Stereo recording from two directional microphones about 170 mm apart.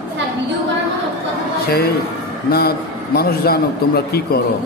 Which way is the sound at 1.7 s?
65° left (ahead or behind).